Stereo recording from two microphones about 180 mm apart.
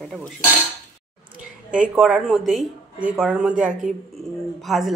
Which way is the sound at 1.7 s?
5° right (ahead or behind).